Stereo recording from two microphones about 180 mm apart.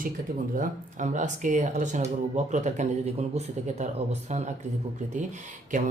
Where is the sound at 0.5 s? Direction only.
45° right (ahead or behind).